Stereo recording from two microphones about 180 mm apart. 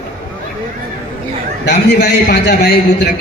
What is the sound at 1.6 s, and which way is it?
A man's voice, 60° left (ahead or behind).